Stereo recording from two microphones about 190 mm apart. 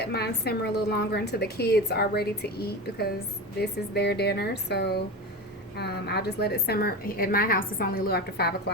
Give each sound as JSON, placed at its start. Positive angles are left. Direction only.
{"t": 0.0, "sound": "a woman's voice", "side_deg": 60}